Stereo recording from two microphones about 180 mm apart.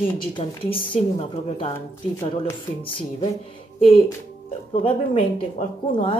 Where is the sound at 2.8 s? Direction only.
30° left (ahead or behind).